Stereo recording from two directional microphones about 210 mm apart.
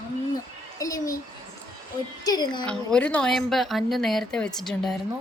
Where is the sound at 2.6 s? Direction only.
5° left (ahead or behind).